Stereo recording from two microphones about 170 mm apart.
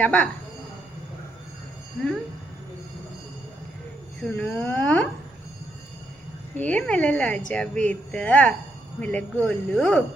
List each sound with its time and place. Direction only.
0.0 s speech: 5° left (ahead or behind)
4.2 s speech: centre (ahead or behind)
6.6 s speech: 5° left (ahead or behind)